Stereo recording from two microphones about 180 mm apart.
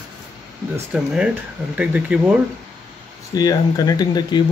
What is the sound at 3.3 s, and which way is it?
Speech, 20° left (ahead or behind).